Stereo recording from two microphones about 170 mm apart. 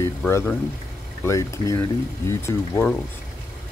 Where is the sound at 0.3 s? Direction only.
15° left (ahead or behind).